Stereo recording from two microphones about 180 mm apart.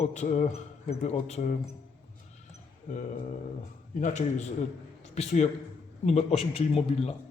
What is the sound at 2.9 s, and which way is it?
A man's voice, 40° left (ahead or behind).